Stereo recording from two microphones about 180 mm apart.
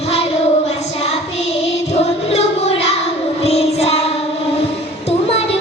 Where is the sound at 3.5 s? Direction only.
35° left (ahead or behind).